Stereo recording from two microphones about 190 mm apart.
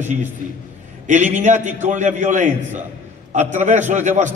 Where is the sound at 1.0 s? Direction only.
40° right (ahead or behind).